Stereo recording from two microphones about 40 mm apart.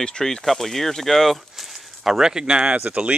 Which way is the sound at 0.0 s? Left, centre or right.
Centre.